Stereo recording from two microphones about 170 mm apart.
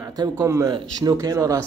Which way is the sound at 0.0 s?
20° right (ahead or behind).